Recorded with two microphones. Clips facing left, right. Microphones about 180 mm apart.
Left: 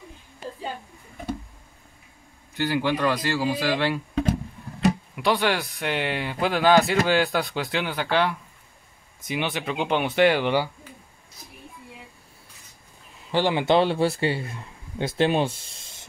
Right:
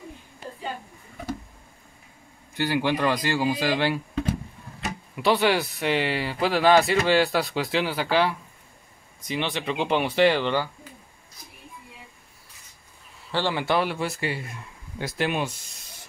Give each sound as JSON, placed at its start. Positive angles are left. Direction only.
{"t": 2.6, "sound": "a man's voice", "side_deg": -10}
{"t": 5.1, "sound": "speech", "side_deg": -5}
{"t": 10.4, "sound": "speech", "side_deg": 10}
{"t": 13.3, "sound": "a man's voice", "side_deg": 15}